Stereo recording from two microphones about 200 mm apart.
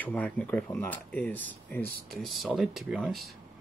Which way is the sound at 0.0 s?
5° left (ahead or behind).